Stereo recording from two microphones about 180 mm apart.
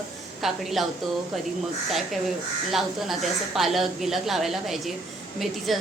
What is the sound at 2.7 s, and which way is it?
A woman's voice, centre (ahead or behind).